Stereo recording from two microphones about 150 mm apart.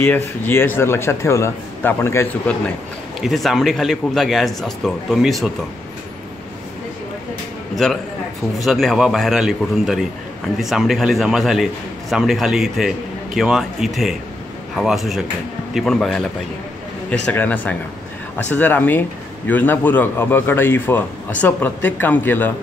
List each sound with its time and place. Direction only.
0.5 s speech: 15° left (ahead or behind)
3.2 s a man's voice: centre (ahead or behind)
7.7 s a man's voice: centre (ahead or behind)
17.3 s speech: 10° left (ahead or behind)